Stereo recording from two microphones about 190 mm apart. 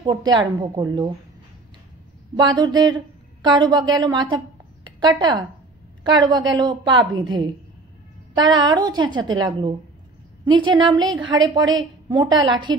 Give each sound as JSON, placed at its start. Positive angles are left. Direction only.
{"t": 0.0, "sound": "a woman's voice", "side_deg": -20}
{"t": 2.3, "sound": "a woman's voice", "side_deg": -25}